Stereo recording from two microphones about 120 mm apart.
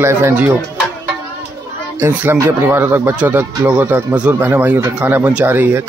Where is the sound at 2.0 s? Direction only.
20° right (ahead or behind).